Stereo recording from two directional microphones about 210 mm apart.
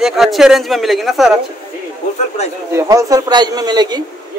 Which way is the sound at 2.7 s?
15° right (ahead or behind).